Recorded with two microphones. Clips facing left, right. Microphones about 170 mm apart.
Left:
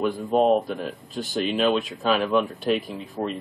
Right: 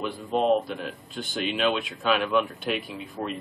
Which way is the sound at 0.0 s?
45° left (ahead or behind).